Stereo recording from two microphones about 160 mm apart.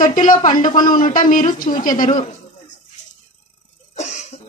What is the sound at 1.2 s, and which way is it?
Speech, 55° left (ahead or behind).